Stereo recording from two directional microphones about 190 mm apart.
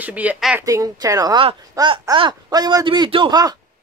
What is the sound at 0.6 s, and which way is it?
Speech, 20° right (ahead or behind).